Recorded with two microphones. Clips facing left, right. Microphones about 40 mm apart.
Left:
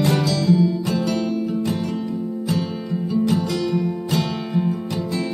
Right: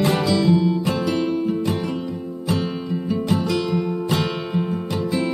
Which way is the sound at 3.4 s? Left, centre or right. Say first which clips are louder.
Even; centre.